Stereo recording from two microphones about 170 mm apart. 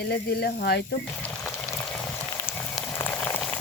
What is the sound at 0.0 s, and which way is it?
Speech, 75° left (ahead or behind).